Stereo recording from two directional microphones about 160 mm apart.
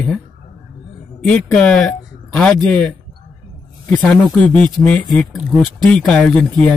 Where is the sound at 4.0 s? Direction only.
5° left (ahead or behind).